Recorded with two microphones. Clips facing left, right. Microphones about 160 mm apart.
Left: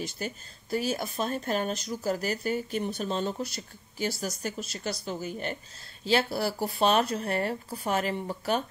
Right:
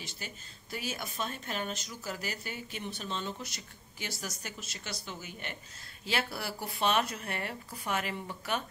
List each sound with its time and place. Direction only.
0.0 s a woman's voice: 40° left (ahead or behind)